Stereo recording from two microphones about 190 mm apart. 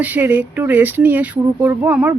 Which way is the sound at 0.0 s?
10° right (ahead or behind).